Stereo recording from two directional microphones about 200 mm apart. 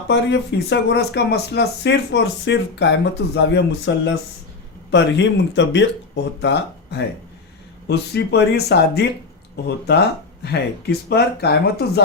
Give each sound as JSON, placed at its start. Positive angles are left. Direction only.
{"t": 0.1, "sound": "speech", "side_deg": 60}